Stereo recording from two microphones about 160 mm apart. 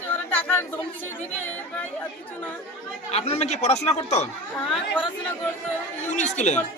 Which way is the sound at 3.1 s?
40° left (ahead or behind).